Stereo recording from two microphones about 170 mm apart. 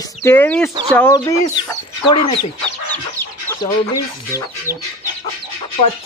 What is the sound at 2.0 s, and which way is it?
Speech, 25° left (ahead or behind).